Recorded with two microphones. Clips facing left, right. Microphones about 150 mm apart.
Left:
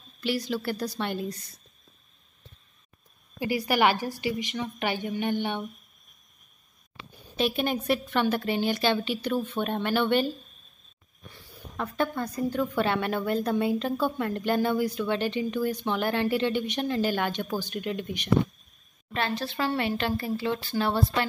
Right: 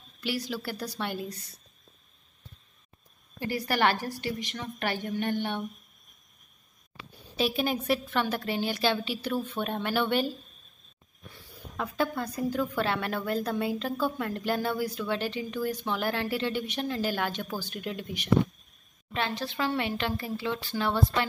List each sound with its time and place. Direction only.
0.2 s a woman's voice: 5° right (ahead or behind)
3.3 s a woman's voice: 10° left (ahead or behind)
7.3 s a woman's voice: 5° right (ahead or behind)
11.7 s a woman's voice: 5° right (ahead or behind)
19.1 s a woman's voice: 15° right (ahead or behind)
20.0 s speech: 45° left (ahead or behind)